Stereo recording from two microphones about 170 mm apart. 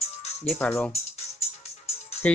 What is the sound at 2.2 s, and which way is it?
Speech, 10° left (ahead or behind).